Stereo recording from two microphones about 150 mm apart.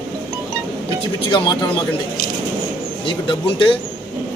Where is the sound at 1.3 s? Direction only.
30° left (ahead or behind).